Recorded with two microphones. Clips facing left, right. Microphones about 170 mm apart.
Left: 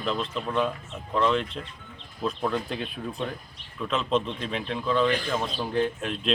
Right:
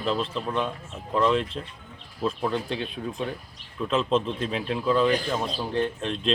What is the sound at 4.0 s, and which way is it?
Speech, centre (ahead or behind).